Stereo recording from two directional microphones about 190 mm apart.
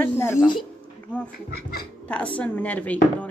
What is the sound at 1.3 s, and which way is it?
Speech, 55° left (ahead or behind).